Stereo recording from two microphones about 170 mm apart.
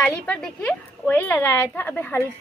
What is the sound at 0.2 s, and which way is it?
A woman's voice, 5° left (ahead or behind).